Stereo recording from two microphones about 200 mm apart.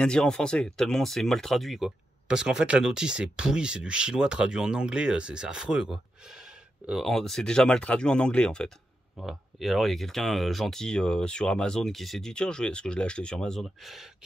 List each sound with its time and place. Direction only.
0.0 s speech: 5° left (ahead or behind)